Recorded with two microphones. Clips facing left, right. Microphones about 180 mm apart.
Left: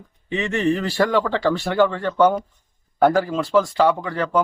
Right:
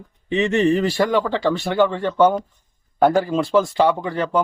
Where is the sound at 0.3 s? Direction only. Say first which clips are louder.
Right 3 dB; 25° right (ahead or behind).